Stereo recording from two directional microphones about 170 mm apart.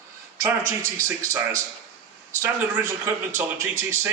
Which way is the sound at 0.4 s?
15° right (ahead or behind).